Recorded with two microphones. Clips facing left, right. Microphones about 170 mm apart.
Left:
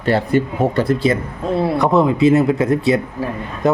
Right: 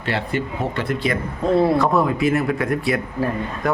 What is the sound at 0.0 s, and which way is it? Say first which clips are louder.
Speech: left 8 dB; 45° left (ahead or behind).